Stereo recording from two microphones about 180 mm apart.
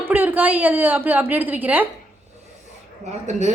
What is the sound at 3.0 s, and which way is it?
Speech, 40° right (ahead or behind).